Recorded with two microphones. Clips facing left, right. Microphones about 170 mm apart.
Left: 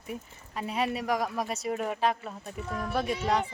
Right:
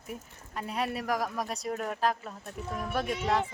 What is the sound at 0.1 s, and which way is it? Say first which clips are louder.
A woman's voice: left 2 dB; centre (ahead or behind).